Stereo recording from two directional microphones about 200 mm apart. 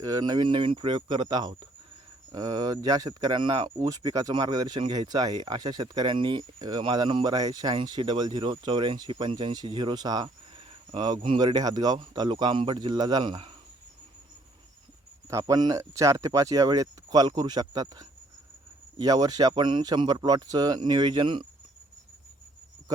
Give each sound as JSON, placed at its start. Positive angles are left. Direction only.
{"t": 0.0, "sound": "speech", "side_deg": -20}
{"t": 15.3, "sound": "speech", "side_deg": -15}